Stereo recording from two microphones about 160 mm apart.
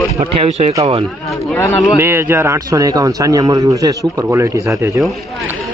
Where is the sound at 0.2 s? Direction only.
40° right (ahead or behind).